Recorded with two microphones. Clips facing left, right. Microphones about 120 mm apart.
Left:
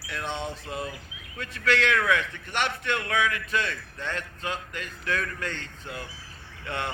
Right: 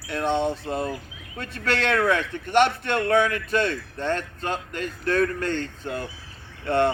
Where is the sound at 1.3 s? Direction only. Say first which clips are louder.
Even; 30° right (ahead or behind).